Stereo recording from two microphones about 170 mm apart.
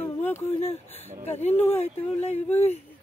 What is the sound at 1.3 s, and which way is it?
Speech, 40° left (ahead or behind).